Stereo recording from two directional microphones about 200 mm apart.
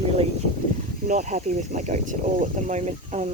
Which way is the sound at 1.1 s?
40° right (ahead or behind).